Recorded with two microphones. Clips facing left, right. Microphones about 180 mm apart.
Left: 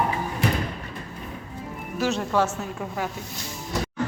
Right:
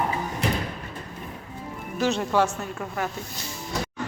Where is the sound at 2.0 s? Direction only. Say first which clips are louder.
Right 1 dB; centre (ahead or behind).